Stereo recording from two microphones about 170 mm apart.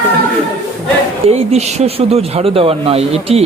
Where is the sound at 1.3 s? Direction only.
40° right (ahead or behind).